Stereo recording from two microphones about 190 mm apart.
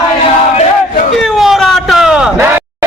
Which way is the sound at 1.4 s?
Centre (ahead or behind).